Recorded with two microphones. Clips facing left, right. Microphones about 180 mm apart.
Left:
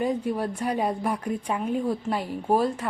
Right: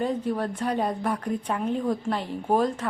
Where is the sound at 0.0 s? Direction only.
10° left (ahead or behind).